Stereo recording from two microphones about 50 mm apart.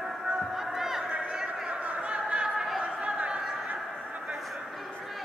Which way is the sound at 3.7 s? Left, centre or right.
Right.